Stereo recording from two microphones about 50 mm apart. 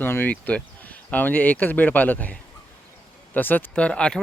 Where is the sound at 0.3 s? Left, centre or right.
Left.